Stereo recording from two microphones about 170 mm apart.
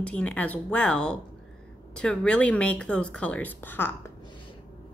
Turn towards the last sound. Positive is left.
turn(degrees=10)  # may be behind; listen again after turning